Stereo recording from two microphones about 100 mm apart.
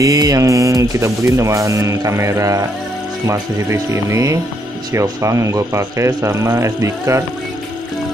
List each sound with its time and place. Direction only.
0.0 s speech: 40° right (ahead or behind)